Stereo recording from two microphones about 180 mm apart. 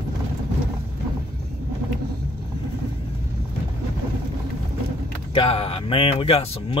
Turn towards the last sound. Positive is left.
turn(degrees=30)  # may be behind; listen again after turning